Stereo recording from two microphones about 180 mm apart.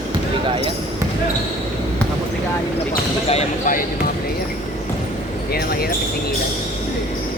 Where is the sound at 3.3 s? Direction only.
35° left (ahead or behind).